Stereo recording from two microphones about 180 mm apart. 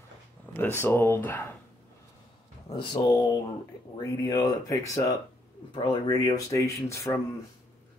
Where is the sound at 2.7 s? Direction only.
25° left (ahead or behind).